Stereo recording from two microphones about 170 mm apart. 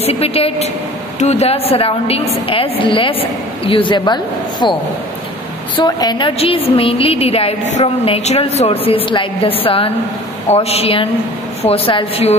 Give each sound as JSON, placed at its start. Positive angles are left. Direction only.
{"t": 0.0, "sound": "a woman's voice", "side_deg": 35}
{"t": 5.8, "sound": "a woman's voice", "side_deg": 25}